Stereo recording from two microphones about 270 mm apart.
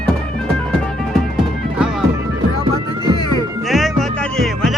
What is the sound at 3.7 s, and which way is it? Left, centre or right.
Music, centre.